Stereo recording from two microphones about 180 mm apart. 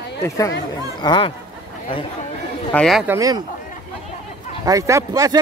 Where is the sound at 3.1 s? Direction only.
20° right (ahead or behind).